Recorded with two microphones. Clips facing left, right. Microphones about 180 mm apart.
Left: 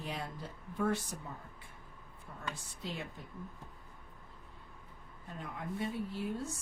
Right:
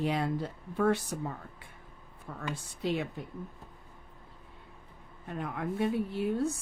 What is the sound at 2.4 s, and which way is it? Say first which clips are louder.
Speech: right 7 dB; 70° right (ahead or behind).